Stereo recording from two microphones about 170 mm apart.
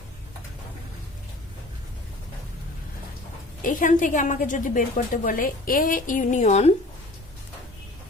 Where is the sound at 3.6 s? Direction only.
50° left (ahead or behind).